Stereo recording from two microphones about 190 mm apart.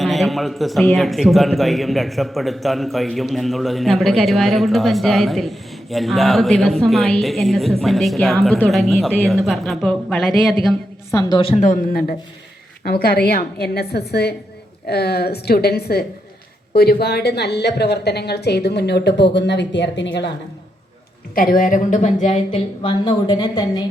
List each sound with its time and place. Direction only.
0.0 s a man's voice: centre (ahead or behind)
11.1 s a woman's voice: 20° left (ahead or behind); by 20.3 s 70° left (ahead or behind)
21.3 s speech: 50° left (ahead or behind); by 23.8 s 25° left (ahead or behind)